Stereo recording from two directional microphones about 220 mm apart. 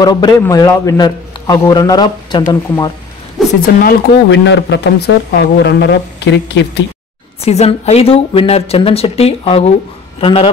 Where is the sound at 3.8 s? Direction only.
50° left (ahead or behind).